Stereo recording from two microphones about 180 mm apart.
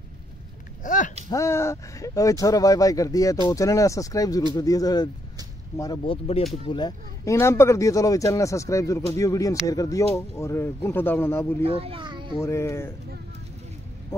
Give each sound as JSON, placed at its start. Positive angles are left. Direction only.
{"t": 0.8, "sound": "a sound", "side_deg": 45}
{"t": 1.3, "sound": "speech", "side_deg": 15}
{"t": 11.6, "sound": "a child's voice", "side_deg": -30}
{"t": 12.4, "sound": "speech", "side_deg": 15}